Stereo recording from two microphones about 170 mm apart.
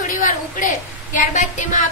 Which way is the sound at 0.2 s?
50° left (ahead or behind).